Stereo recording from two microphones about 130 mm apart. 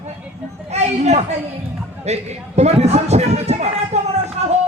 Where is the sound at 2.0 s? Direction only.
55° right (ahead or behind).